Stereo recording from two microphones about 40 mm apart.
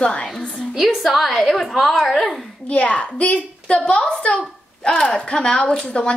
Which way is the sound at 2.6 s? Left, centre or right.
Left.